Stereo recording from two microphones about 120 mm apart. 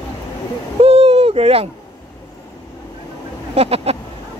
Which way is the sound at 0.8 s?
55° right (ahead or behind).